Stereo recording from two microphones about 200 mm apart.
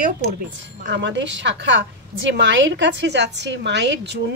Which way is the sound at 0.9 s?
60° right (ahead or behind).